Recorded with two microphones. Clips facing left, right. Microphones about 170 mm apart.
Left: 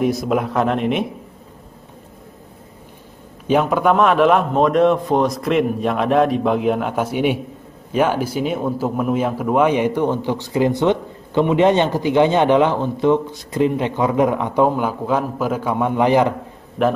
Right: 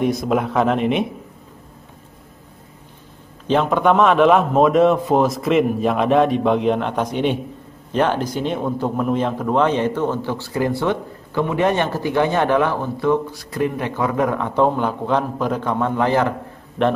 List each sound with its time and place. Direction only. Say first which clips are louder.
0.0 s a man's voice: even; centre (ahead or behind)
3.4 s a man's voice: left 1 dB; 5° left (ahead or behind)
16.8 s a man's voice: left 1 dB; 5° left (ahead or behind)